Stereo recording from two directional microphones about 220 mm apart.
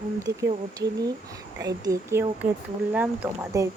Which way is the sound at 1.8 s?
15° right (ahead or behind).